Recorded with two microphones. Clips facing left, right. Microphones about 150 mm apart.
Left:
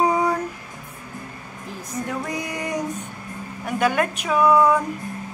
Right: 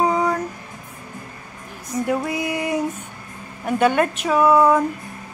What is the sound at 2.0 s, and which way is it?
Music, 10° right (ahead or behind).